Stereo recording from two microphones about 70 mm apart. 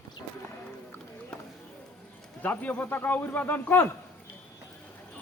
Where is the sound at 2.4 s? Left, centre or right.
Left.